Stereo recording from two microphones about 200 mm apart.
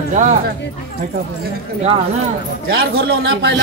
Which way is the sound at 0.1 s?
35° right (ahead or behind).